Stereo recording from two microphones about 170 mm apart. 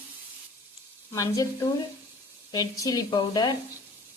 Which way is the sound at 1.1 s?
20° left (ahead or behind).